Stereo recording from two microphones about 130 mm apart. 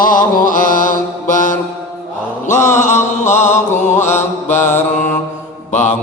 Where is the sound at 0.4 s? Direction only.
90° left.